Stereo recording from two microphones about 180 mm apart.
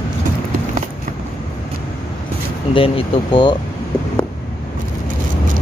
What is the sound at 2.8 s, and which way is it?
Speech, 30° left (ahead or behind).